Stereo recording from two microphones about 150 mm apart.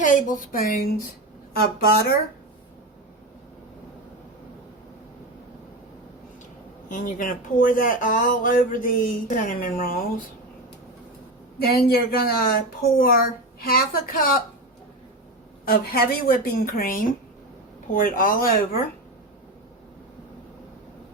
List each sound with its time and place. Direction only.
0.0 s speech: 60° left (ahead or behind)
1.5 s speech: 90° left
6.9 s speech: 65° left (ahead or behind)
11.6 s a woman's voice: 85° left; by 14.3 s 70° left (ahead or behind)
15.6 s a woman's voice: 90° left